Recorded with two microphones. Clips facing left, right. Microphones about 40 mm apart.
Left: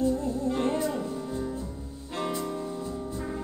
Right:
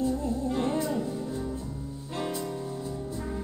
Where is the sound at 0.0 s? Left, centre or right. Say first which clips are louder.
Left 2 dB; left.